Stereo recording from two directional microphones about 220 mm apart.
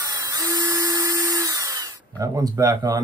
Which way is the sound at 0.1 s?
15° right (ahead or behind).